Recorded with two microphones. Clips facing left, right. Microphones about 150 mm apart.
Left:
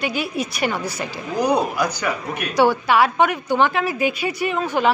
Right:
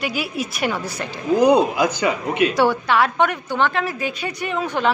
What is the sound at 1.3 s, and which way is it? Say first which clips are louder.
A man's voice: right 4 dB; 20° right (ahead or behind).